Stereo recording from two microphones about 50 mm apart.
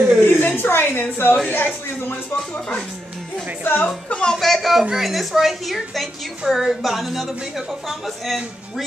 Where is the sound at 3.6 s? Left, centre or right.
Left.